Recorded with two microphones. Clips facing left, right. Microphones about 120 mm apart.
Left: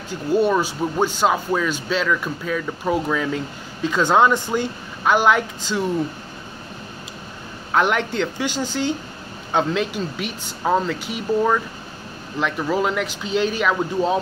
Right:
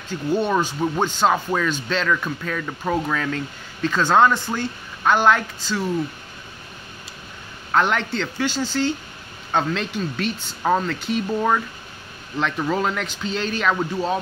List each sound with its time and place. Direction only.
0.3 s speech: 5° left (ahead or behind)
7.7 s speech: 15° left (ahead or behind)
12.4 s speech: 10° left (ahead or behind)